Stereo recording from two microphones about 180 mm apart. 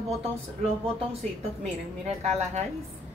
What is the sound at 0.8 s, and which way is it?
A woman's voice, 35° right (ahead or behind).